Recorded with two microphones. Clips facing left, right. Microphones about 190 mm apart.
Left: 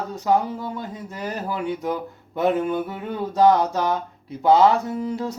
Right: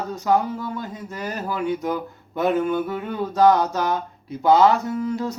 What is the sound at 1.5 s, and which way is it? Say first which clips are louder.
Speech: right 2 dB; 30° left (ahead or behind).